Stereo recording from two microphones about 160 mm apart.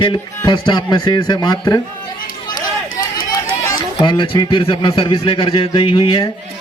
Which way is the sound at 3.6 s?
30° left (ahead or behind).